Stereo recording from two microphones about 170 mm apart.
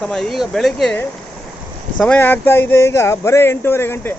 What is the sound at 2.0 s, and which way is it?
Speech, 10° left (ahead or behind).